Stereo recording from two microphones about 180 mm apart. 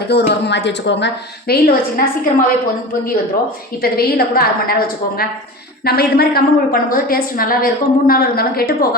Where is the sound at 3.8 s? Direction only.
55° left (ahead or behind).